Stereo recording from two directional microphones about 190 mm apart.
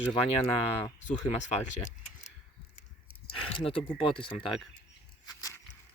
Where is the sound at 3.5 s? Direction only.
30° left (ahead or behind).